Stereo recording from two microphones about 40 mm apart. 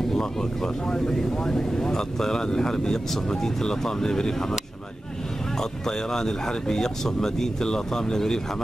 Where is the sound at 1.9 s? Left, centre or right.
Centre.